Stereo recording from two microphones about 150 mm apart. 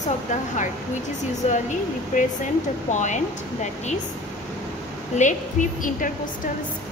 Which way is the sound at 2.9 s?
55° left (ahead or behind).